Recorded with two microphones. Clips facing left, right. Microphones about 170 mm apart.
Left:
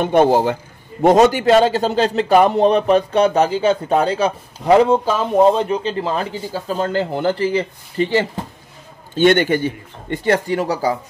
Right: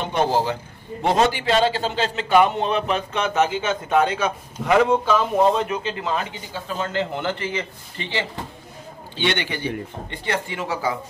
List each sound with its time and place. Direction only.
0.0 s a man's voice: 55° left (ahead or behind)